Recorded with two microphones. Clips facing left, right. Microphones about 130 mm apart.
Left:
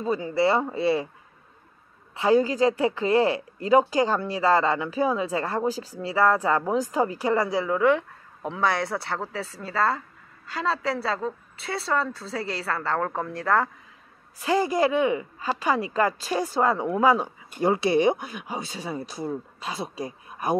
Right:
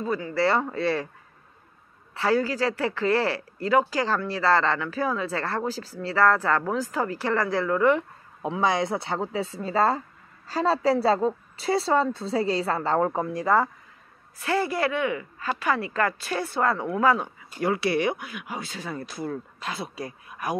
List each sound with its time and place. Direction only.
0.0 s speech: 20° left (ahead or behind)
2.1 s speech: 20° left (ahead or behind)
8.4 s speech: 15° right (ahead or behind)
14.4 s speech: 15° left (ahead or behind)
18.7 s speech: 15° left (ahead or behind)
20.2 s a sound: 25° left (ahead or behind)